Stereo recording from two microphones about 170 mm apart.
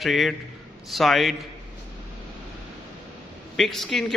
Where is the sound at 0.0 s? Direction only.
Centre (ahead or behind).